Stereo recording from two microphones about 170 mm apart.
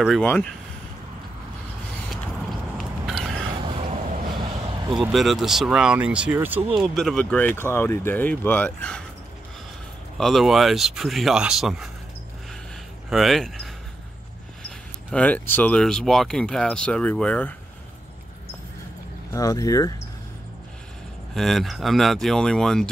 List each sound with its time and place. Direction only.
0.2 s speech: 10° left (ahead or behind)
2.8 s a sound: centre (ahead or behind)
3.6 s vehicle: 30° right (ahead or behind)
4.4 s a sound: 30° right (ahead or behind)
5.1 s speech: centre (ahead or behind)
10.1 s speech: centre (ahead or behind)
13.1 s speech: centre (ahead or behind)
19.3 s speech: 20° left (ahead or behind)
21.3 s speech: centre (ahead or behind)